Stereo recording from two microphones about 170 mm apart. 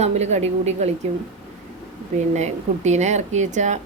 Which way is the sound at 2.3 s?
40° right (ahead or behind).